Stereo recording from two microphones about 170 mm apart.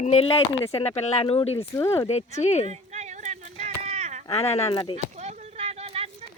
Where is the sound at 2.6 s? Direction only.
40° right (ahead or behind).